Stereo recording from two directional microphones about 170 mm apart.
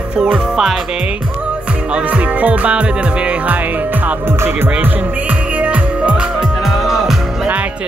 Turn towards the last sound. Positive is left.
turn(degrees=-10)  # may be behind; listen again after turning